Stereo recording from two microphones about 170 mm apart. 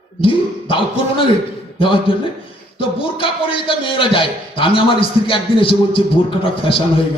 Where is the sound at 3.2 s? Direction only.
30° left (ahead or behind).